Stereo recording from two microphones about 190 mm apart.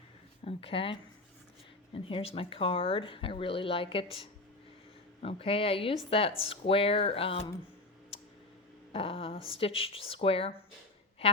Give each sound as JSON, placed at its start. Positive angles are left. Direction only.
{"t": 0.4, "sound": "speech", "side_deg": 30}
{"t": 8.9, "sound": "speech", "side_deg": 30}